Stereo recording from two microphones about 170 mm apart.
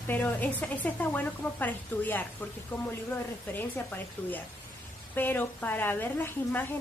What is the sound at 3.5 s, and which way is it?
Speech, 10° left (ahead or behind).